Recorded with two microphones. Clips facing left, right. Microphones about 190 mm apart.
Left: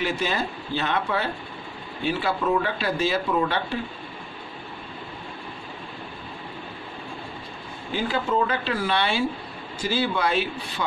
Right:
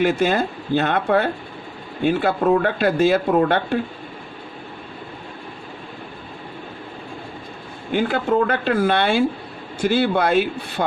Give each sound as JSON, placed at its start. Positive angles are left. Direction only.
{"t": 0.0, "sound": "speech", "side_deg": -50}
{"t": 7.9, "sound": "a man's voice", "side_deg": -55}